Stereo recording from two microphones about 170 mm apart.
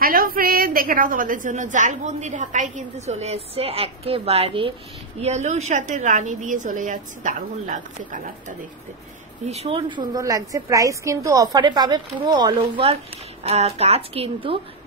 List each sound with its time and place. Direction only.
0.0 s a woman's voice: 60° right (ahead or behind)
9.5 s a woman's voice: 35° right (ahead or behind)